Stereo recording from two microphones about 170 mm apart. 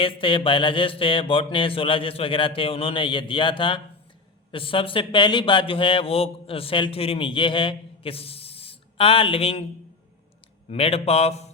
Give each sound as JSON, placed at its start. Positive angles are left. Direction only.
{"t": 0.0, "sound": "speech", "side_deg": 30}
{"t": 10.7, "sound": "speech", "side_deg": 35}